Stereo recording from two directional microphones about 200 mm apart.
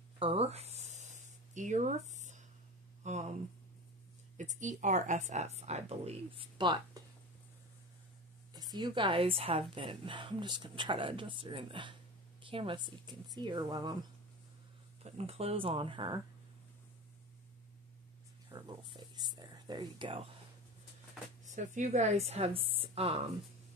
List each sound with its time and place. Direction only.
0.2 s a sound: 30° right (ahead or behind)
3.0 s speech: 35° right (ahead or behind)
4.4 s speech: 40° right (ahead or behind); by 7.0 s 25° right (ahead or behind)
8.5 s a woman's voice: 20° right (ahead or behind)
15.0 s a woman's voice: 30° right (ahead or behind)
18.5 s speech: 20° right (ahead or behind)
21.5 s speech: 35° right (ahead or behind)